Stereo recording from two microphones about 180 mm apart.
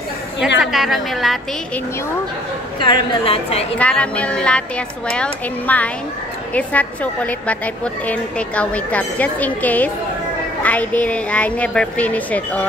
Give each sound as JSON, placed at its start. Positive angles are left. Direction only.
{"t": 0.6, "sound": "a woman's voice", "side_deg": 0}
{"t": 2.8, "sound": "a woman's voice", "side_deg": 25}
{"t": 3.7, "sound": "a woman's voice", "side_deg": 5}